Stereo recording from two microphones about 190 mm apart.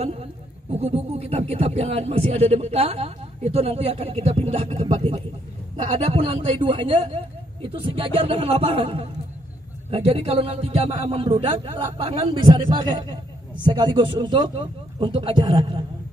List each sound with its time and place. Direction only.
0.0 s a man's voice: 35° right (ahead or behind)